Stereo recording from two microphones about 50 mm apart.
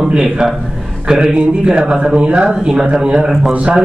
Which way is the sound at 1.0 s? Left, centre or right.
Centre.